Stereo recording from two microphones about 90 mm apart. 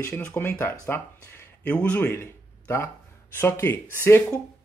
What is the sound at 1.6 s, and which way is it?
Speech, 15° left (ahead or behind).